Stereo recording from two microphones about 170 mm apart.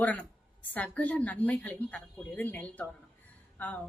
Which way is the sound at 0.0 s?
10° left (ahead or behind).